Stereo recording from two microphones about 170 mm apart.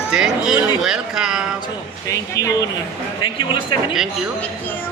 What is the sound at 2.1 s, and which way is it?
Speech, 20° left (ahead or behind).